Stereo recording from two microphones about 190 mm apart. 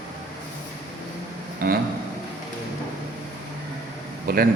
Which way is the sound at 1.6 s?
55° right (ahead or behind).